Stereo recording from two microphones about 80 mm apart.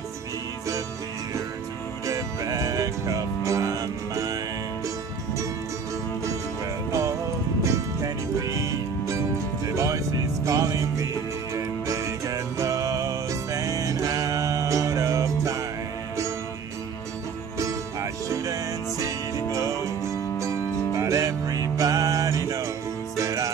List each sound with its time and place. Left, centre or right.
2.0 s music: right
6.9 s music: right
17.6 s music: right